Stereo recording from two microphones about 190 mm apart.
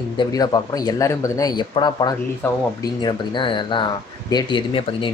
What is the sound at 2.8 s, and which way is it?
Speech, 20° left (ahead or behind).